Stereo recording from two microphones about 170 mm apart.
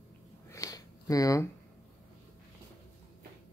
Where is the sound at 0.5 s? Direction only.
20° left (ahead or behind).